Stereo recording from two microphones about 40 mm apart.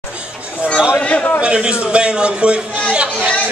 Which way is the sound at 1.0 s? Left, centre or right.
Left.